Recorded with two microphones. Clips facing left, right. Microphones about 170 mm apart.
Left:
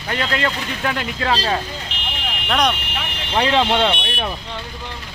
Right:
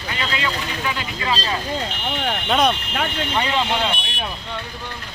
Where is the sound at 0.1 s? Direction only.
50° left (ahead or behind); by 2.1 s 75° left (ahead or behind).